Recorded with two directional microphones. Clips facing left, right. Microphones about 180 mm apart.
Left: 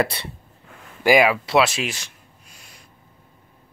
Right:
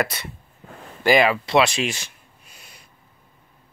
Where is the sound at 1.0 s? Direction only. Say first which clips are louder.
Left 1 dB; 10° left (ahead or behind).